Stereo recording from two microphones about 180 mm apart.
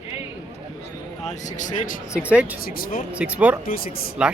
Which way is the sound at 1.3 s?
45° left (ahead or behind).